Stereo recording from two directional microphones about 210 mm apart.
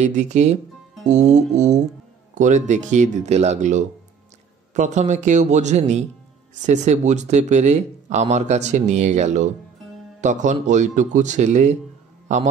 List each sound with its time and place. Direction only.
0.0 s speech: 35° right (ahead or behind)